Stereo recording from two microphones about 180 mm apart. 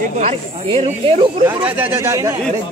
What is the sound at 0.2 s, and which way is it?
Speech, 35° right (ahead or behind).